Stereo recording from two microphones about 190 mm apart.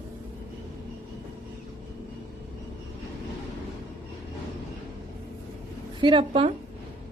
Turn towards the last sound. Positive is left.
turn(degrees=-30)  # may be behind; listen again after turning